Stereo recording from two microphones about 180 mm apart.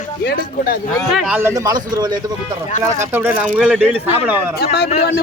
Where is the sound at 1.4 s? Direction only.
20° right (ahead or behind).